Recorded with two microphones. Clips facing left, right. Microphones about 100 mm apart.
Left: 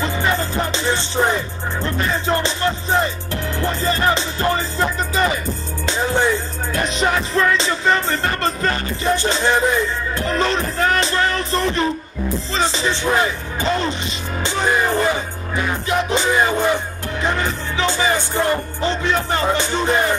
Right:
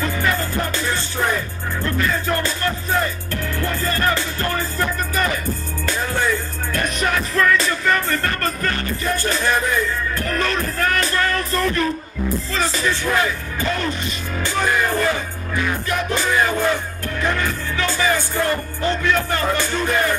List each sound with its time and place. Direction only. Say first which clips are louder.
0.0 s music: left 1 dB; 20° left (ahead or behind)